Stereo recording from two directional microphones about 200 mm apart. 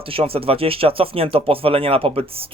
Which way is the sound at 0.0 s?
30° right (ahead or behind).